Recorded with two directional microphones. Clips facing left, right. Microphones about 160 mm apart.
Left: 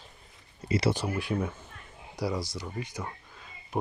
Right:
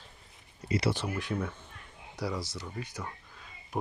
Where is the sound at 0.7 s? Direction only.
25° left (ahead or behind).